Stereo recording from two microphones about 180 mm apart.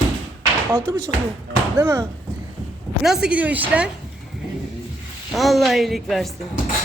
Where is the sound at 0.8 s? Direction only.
25° right (ahead or behind).